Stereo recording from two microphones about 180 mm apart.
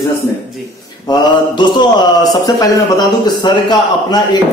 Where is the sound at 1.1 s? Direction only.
25° left (ahead or behind).